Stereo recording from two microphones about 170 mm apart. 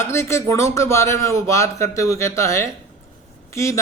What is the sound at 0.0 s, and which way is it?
A man's voice, 15° left (ahead or behind).